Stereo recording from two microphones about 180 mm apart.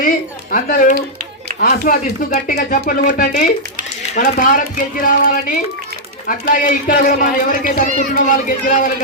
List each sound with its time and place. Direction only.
0.5 s speech: 50° left (ahead or behind)